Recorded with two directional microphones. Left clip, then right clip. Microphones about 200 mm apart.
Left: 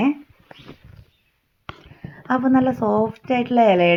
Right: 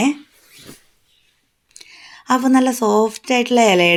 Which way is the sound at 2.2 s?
30° right (ahead or behind).